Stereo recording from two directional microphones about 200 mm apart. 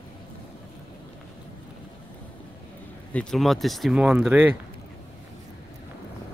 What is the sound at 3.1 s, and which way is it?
Speech, 5° left (ahead or behind).